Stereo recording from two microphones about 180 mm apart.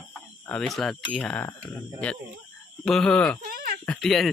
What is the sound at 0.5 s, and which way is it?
Speech, 5° left (ahead or behind).